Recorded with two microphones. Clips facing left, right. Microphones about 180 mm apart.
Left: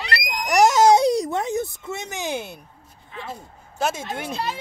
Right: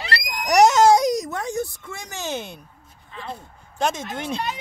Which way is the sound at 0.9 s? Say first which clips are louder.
Left 1 dB; 30° left (ahead or behind).